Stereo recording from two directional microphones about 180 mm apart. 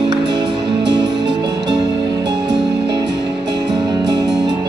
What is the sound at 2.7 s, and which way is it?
Music, 70° right (ahead or behind).